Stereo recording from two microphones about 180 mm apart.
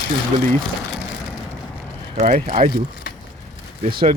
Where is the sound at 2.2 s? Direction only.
40° right (ahead or behind).